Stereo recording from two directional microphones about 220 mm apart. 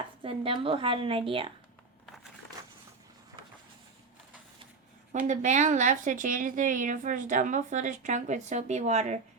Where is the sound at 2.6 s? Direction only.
15° right (ahead or behind).